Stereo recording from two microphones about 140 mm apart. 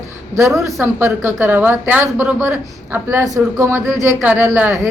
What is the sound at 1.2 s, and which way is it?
A woman's voice, 15° right (ahead or behind).